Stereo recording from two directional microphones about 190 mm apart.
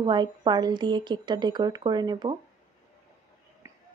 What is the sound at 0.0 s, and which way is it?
Speech, 25° right (ahead or behind).